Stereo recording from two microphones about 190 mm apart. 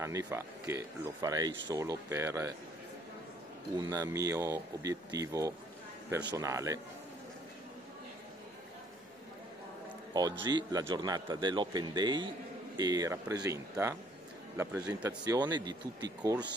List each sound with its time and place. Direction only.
0.0 s speech: 15° right (ahead or behind)
3.7 s speech: 20° right (ahead or behind)
10.4 s speech: 20° right (ahead or behind)